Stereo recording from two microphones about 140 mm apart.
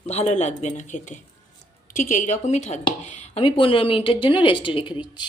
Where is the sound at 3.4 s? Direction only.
40° left (ahead or behind).